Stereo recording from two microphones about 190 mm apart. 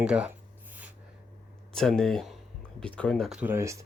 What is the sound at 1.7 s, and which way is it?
Speech, centre (ahead or behind).